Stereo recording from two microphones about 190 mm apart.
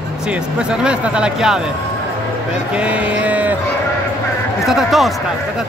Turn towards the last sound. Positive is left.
turn(degrees=0)  # may be behind; listen again after turning